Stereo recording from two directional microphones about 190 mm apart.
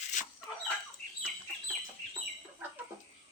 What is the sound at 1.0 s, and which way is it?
Chicken, 35° right (ahead or behind).